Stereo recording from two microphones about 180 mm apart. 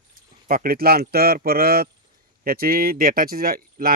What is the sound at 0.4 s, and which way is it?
Speech, 55° right (ahead or behind).